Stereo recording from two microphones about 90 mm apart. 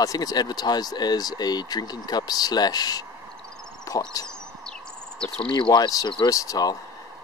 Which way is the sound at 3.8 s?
40° left (ahead or behind).